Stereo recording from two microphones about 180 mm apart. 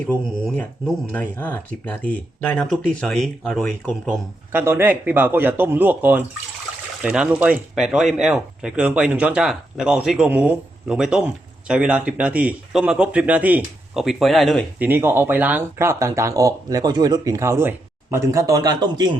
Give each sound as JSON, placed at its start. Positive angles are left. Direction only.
{"t": 0.0, "sound": "speech", "side_deg": 5}
{"t": 4.5, "sound": "speech", "side_deg": -10}
{"t": 14.8, "sound": "speech", "side_deg": -10}